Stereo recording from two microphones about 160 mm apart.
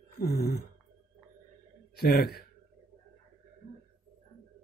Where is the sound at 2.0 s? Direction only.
75° left (ahead or behind).